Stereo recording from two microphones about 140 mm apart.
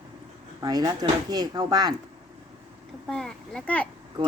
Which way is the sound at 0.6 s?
30° right (ahead or behind).